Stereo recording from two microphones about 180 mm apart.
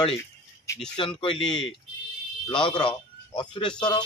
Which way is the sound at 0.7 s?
15° left (ahead or behind).